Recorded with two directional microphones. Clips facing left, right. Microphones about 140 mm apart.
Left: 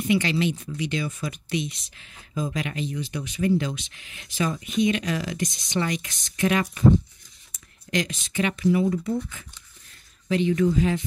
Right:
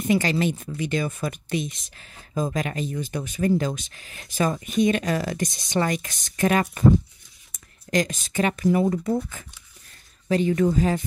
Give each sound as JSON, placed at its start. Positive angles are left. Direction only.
{"t": 0.0, "sound": "speech", "side_deg": -40}